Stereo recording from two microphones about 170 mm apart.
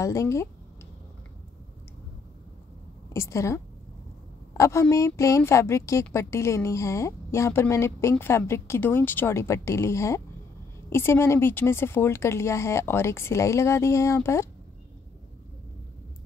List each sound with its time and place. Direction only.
0.0 s a woman's voice: 15° left (ahead or behind)
3.1 s a woman's voice: 15° left (ahead or behind)